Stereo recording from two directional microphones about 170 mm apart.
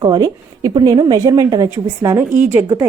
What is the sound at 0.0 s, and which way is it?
A woman's voice, 25° right (ahead or behind).